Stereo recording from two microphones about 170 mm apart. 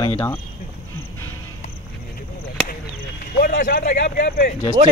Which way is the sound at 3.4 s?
60° left (ahead or behind).